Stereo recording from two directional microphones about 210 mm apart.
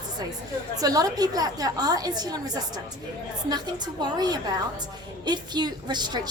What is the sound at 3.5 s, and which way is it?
A woman's voice, 20° right (ahead or behind).